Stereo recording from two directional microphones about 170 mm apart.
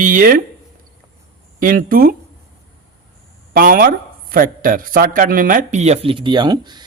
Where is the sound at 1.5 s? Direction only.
55° right (ahead or behind).